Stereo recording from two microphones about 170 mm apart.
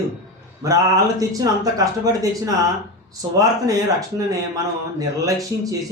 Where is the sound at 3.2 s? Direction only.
20° right (ahead or behind).